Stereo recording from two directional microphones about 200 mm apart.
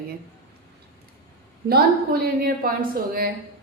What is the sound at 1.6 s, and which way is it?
A woman's voice, 50° right (ahead or behind).